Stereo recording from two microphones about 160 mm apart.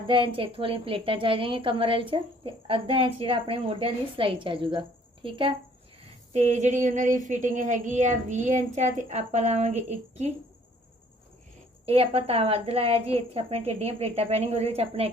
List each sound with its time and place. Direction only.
0.3 s a woman's voice: 35° right (ahead or behind)
6.3 s speech: 45° right (ahead or behind)
11.9 s a woman's voice: 35° right (ahead or behind)